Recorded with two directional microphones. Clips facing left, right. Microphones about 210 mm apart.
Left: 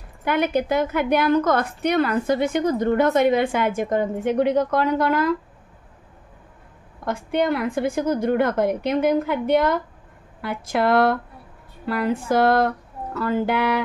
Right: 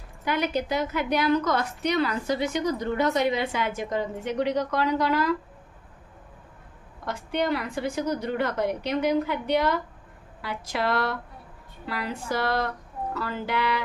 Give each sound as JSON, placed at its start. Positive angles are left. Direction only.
{"t": 0.2, "sound": "a woman's voice", "side_deg": 55}
{"t": 7.1, "sound": "a woman's voice", "side_deg": 50}